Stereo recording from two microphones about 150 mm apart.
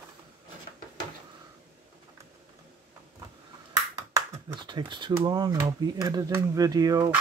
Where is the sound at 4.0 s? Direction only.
20° right (ahead or behind).